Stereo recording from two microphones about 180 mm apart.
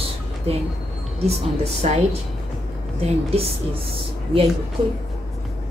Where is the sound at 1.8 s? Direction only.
40° right (ahead or behind).